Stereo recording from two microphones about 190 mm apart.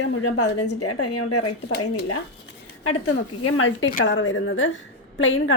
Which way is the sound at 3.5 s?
90° left.